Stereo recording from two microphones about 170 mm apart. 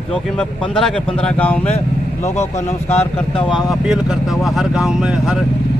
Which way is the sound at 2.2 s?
40° left (ahead or behind).